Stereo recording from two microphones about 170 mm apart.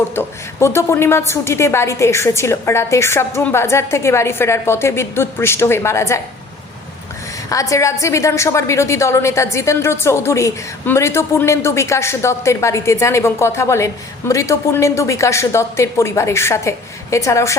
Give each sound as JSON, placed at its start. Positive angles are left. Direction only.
{"t": 0.1, "sound": "a woman's voice", "side_deg": 15}
{"t": 7.5, "sound": "a woman's voice", "side_deg": 20}